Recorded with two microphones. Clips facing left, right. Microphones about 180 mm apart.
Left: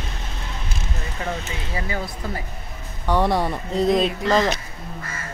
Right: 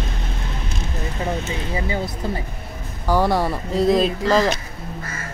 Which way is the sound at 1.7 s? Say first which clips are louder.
Right 2 dB; 20° right (ahead or behind).